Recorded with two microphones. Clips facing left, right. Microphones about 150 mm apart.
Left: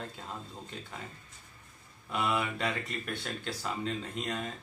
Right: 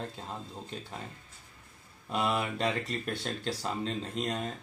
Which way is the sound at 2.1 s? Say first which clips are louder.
Right 1 dB; 35° right (ahead or behind).